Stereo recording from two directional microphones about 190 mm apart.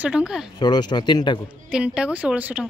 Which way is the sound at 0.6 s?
20° left (ahead or behind).